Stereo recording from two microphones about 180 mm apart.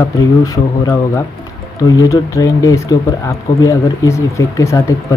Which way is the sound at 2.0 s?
20° left (ahead or behind).